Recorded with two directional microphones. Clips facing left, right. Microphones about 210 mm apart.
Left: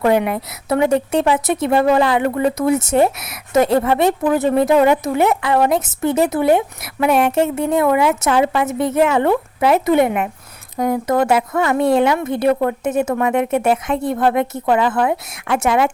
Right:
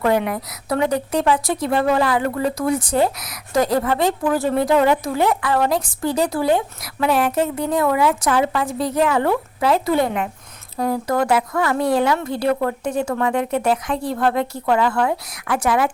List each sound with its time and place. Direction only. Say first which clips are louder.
0.0 s a woman's voice: left 3 dB; 20° left (ahead or behind)